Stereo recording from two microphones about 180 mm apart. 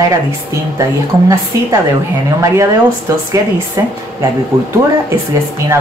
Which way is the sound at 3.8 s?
20° right (ahead or behind).